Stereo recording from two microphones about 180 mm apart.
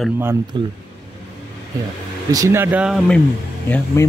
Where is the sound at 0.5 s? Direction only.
25° right (ahead or behind).